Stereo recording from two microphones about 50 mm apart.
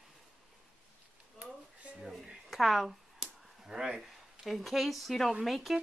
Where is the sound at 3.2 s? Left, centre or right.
Centre.